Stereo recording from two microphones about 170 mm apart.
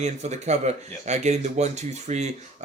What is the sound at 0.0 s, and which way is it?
Speech, 40° right (ahead or behind).